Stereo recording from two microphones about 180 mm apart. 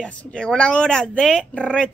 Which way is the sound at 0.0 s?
5° left (ahead or behind).